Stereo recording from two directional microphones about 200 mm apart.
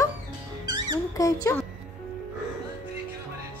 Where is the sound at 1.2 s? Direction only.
15° left (ahead or behind).